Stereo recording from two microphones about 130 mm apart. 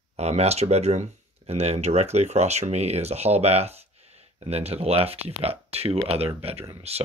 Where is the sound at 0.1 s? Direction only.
55° right (ahead or behind).